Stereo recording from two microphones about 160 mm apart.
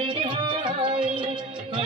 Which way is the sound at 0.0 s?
30° right (ahead or behind).